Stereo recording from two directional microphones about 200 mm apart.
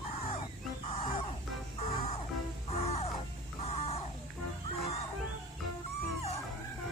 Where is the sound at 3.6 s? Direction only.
30° left (ahead or behind).